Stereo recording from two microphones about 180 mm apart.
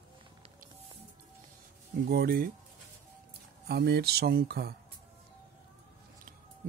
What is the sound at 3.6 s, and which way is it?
Speech, 65° right (ahead or behind).